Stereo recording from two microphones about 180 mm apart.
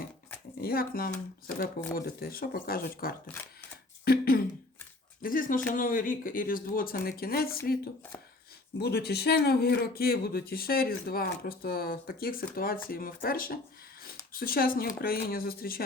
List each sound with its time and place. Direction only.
0.6 s speech: 55° left (ahead or behind)
4.0 s throat clearing: 60° left (ahead or behind)
5.2 s speech: 50° left (ahead or behind)
8.8 s a man's voice: 65° left (ahead or behind)